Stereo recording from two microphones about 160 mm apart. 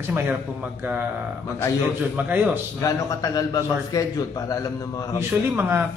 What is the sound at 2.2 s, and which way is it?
Speech, 10° right (ahead or behind).